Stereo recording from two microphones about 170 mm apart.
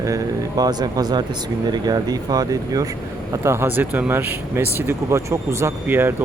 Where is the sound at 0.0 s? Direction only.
20° right (ahead or behind).